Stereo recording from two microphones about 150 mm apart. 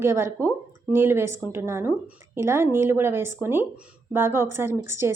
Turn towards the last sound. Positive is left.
turn(degrees=-15)  # may be behind; listen again after turning